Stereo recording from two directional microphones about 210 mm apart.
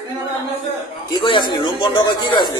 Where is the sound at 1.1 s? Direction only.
25° left (ahead or behind).